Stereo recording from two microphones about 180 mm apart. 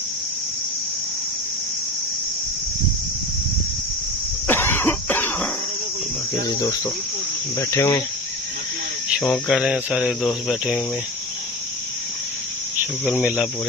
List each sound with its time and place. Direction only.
4.5 s cough: 10° left (ahead or behind)
6.4 s cricket: 20° left (ahead or behind)
9.2 s speech: centre (ahead or behind)